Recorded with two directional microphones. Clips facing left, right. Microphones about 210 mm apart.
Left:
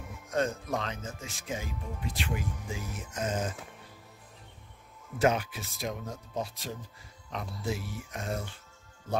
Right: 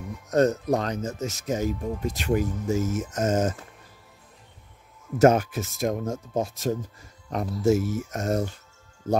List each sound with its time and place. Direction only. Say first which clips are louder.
0.3 s speech: right 9 dB; 40° right (ahead or behind)
5.2 s speech: right 9 dB; 45° right (ahead or behind)